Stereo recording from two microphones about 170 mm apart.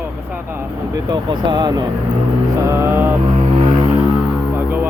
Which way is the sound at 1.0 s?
25° right (ahead or behind).